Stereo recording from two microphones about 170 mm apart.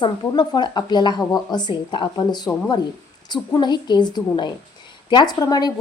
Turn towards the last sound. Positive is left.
turn(degrees=20)  # may be behind; listen again after turning